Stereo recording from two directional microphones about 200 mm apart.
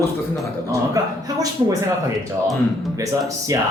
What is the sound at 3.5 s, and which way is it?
Speech, 15° right (ahead or behind).